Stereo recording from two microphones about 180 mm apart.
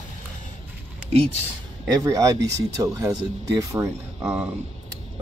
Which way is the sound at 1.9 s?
20° right (ahead or behind).